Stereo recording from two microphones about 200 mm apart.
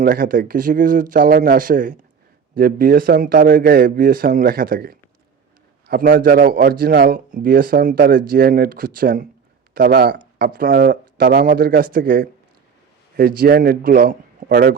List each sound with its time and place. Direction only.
0.0 s a man's voice: 45° right (ahead or behind)